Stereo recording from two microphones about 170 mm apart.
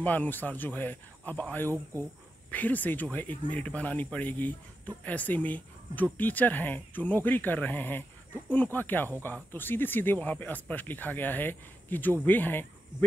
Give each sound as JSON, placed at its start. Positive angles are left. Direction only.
{"t": 0.0, "sound": "speech", "side_deg": 10}